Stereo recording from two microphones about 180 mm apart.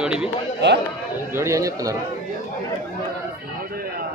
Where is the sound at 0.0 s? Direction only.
5° right (ahead or behind).